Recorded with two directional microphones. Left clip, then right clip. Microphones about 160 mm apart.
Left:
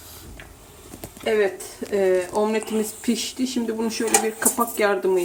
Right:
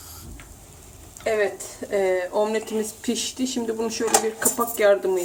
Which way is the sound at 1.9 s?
45° left (ahead or behind).